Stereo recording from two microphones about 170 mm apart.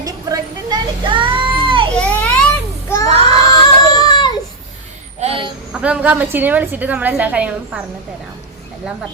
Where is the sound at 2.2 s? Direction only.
5° left (ahead or behind).